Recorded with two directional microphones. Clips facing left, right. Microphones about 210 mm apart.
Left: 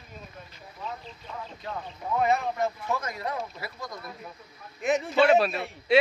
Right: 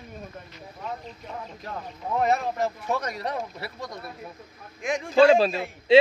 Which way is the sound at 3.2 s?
30° right (ahead or behind).